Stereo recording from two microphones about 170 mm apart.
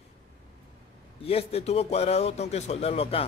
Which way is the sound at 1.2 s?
35° left (ahead or behind).